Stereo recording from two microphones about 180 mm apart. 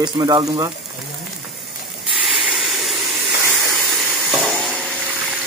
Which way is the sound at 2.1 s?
Centre (ahead or behind).